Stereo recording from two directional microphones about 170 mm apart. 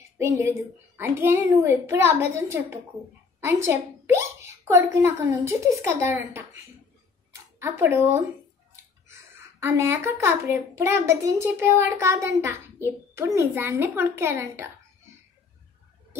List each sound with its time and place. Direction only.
0.2 s a child's voice: 15° right (ahead or behind)
7.6 s a child's voice: 15° right (ahead or behind)